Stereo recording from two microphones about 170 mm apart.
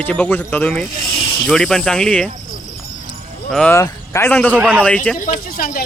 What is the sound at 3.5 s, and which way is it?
A man's voice, 5° left (ahead or behind).